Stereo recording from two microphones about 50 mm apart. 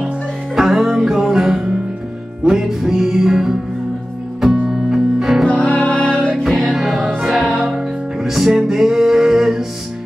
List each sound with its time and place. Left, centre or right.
0.6 s music: centre
4.6 s music: centre
5.5 s music: left
6.3 s music: centre; by 7.7 s right
7.7 s music: centre